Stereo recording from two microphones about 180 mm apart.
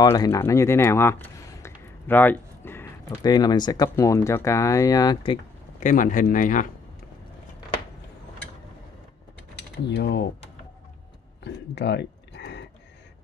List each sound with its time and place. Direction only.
0.0 s speech: 20° left (ahead or behind)
5.8 s speech: 45° left (ahead or behind)
9.8 s speech: 70° left (ahead or behind)
11.4 s a sound: 75° left (ahead or behind)